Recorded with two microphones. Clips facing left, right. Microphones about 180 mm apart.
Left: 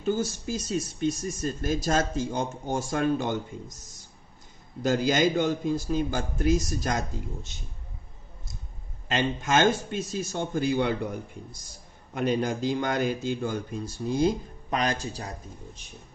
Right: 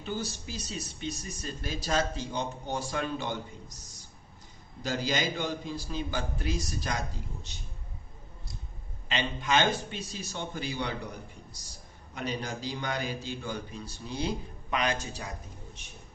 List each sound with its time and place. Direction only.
0.0 s speech: 45° left (ahead or behind)
4.8 s speech: 50° left (ahead or behind)
9.0 s speech: 45° left (ahead or behind)